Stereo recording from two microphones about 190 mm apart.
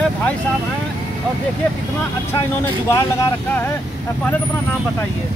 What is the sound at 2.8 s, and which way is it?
Speech, 15° left (ahead or behind).